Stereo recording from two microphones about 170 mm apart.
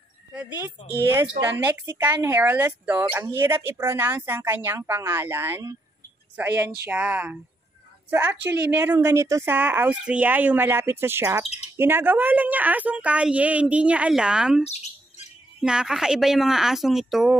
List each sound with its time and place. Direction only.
0.3 s speech: 10° right (ahead or behind)
14.6 s bird: 40° left (ahead or behind)
15.6 s speech: 5° right (ahead or behind)